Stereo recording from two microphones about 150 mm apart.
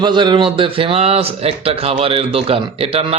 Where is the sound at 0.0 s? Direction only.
30° right (ahead or behind).